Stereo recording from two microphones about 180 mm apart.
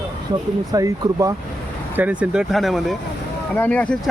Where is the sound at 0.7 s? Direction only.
20° right (ahead or behind).